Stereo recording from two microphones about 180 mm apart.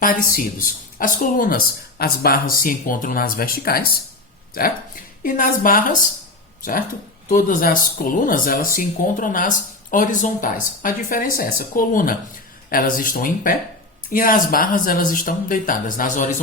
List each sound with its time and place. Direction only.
0.0 s speech: 50° left (ahead or behind)
5.2 s speech: 50° left (ahead or behind)
7.3 s speech: 50° left (ahead or behind)